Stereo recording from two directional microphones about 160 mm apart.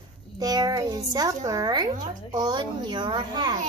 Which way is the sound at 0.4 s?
25° right (ahead or behind).